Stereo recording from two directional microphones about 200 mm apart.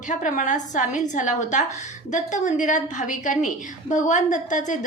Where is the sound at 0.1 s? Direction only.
40° left (ahead or behind).